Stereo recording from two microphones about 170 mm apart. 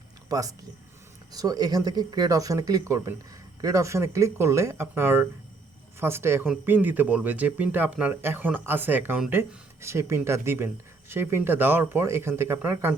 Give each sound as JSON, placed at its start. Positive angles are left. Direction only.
{"t": 0.3, "sound": "speech", "side_deg": -20}